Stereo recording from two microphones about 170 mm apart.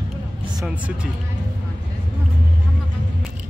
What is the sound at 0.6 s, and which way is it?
Speech, 5° right (ahead or behind).